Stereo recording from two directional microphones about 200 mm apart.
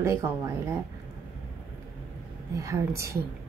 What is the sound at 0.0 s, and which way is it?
Speech, 15° right (ahead or behind).